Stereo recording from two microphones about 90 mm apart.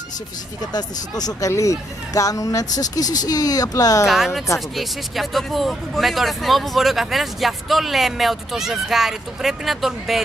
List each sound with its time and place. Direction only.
0.7 s speech: 45° left (ahead or behind)
4.1 s speech: centre (ahead or behind)